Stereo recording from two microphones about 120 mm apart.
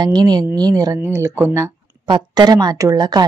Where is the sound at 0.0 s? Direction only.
35° right (ahead or behind).